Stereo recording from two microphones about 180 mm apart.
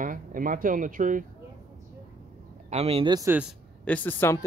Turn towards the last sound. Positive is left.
turn(degrees=10)  # may be behind; listen again after turning